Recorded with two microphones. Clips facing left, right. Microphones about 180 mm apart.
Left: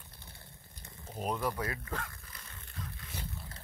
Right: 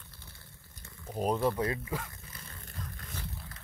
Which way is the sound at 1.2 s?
30° right (ahead or behind).